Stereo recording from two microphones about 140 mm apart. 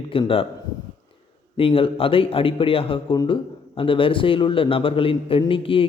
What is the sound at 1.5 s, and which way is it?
A man's voice, 40° left (ahead or behind).